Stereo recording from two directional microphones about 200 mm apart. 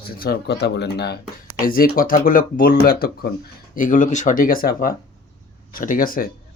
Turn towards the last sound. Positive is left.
turn(degrees=45)  # may be behind; listen again after turning